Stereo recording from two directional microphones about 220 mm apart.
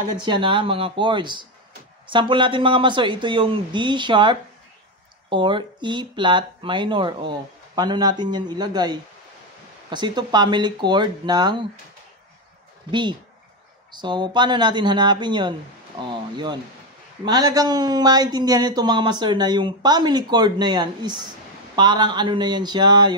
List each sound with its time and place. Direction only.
0.2 s speech: 20° right (ahead or behind)
13.9 s speech: 20° right (ahead or behind)